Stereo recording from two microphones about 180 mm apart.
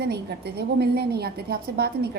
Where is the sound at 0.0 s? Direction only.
65° right (ahead or behind).